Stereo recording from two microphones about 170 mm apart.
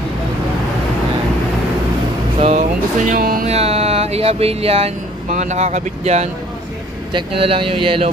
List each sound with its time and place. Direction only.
2.4 s music: 40° right (ahead or behind)
3.1 s speech: 60° right (ahead or behind)
3.4 s speech: 35° right (ahead or behind)